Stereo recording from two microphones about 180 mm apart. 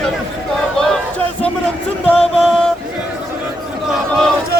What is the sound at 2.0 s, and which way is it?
Music, 10° left (ahead or behind).